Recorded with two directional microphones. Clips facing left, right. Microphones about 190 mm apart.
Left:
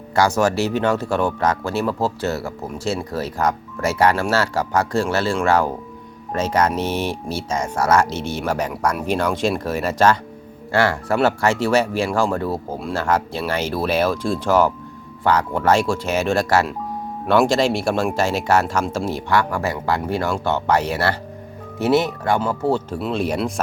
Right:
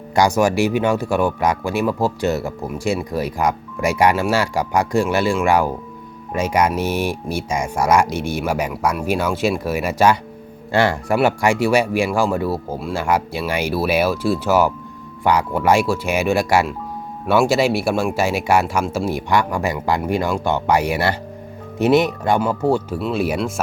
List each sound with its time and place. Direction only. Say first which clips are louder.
0.1 s speech: right 2 dB; 15° right (ahead or behind)
23.0 s speech: right 1 dB; 5° right (ahead or behind)